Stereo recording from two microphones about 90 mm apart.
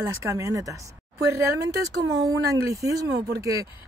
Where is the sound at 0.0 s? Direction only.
35° right (ahead or behind).